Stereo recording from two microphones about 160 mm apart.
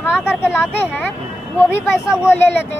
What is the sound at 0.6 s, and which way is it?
Speech, 15° left (ahead or behind).